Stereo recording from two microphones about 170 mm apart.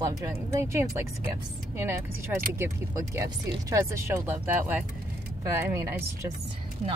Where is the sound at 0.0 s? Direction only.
20° right (ahead or behind).